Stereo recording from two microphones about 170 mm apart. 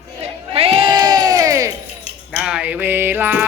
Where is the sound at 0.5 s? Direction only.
35° right (ahead or behind).